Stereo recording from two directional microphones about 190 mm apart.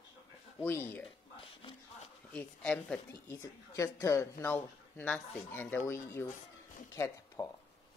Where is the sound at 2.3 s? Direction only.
5° left (ahead or behind).